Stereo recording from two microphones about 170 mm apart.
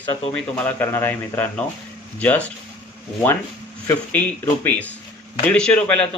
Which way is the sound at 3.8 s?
10° left (ahead or behind).